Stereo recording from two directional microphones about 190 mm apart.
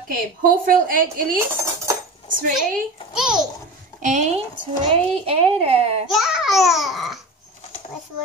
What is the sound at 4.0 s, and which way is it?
Speech, 40° right (ahead or behind).